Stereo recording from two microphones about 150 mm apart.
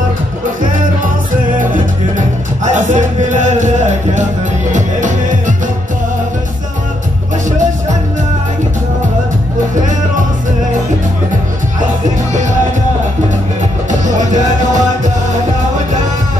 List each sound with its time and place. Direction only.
1.6 s music: 60° right (ahead or behind)
14.0 s music: 55° right (ahead or behind)